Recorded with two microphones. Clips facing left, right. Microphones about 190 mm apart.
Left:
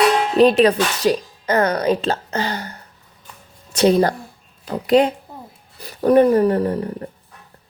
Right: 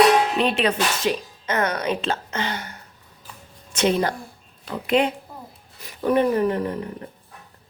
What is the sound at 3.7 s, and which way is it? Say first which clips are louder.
Speech: left 6 dB; 40° left (ahead or behind).